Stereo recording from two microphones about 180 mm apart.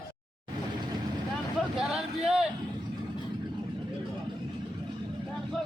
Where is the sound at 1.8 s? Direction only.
5° right (ahead or behind).